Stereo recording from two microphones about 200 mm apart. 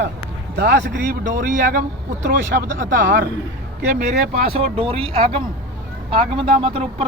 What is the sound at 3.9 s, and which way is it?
Speech, 30° right (ahead or behind).